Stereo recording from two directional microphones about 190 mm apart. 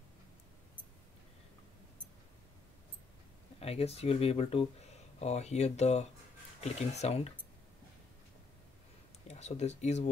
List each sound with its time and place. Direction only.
3.5 s speech: 30° left (ahead or behind)
9.3 s speech: 35° left (ahead or behind)